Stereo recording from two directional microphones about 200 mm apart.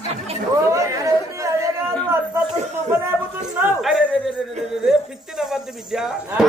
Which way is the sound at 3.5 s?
Centre (ahead or behind).